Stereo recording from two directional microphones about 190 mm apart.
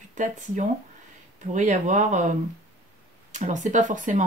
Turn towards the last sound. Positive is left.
turn(degrees=-40)  # may be behind; listen again after turning